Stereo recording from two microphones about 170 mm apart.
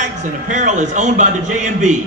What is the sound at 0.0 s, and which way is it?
A man's voice, 45° right (ahead or behind).